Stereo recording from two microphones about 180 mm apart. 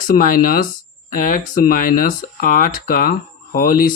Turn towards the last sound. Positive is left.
turn(degrees=50)  # may be behind; listen again after turning